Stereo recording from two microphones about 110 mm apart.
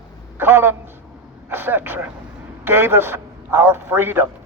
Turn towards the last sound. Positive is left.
turn(degrees=-20)  # may be behind; listen again after turning